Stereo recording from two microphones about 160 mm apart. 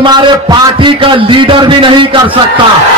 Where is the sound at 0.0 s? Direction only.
25° right (ahead or behind).